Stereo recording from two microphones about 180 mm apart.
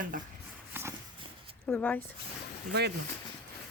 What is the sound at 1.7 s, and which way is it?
Speech, 10° left (ahead or behind).